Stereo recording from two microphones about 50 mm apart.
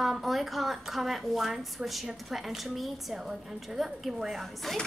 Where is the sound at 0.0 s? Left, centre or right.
Centre.